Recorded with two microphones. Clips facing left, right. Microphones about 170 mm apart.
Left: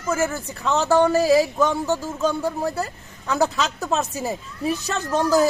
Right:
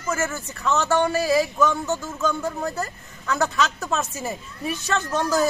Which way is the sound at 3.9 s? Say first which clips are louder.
Left 3 dB; 35° left (ahead or behind).